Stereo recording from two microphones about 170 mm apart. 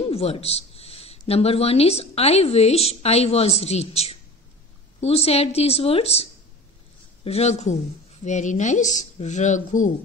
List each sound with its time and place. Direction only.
0.1 s speech: 35° left (ahead or behind)
7.2 s speech: 40° left (ahead or behind)